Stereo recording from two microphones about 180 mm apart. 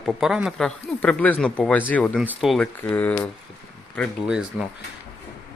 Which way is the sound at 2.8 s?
10° left (ahead or behind).